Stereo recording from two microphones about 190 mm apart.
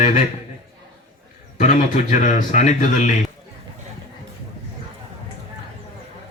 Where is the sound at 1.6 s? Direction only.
40° left (ahead or behind).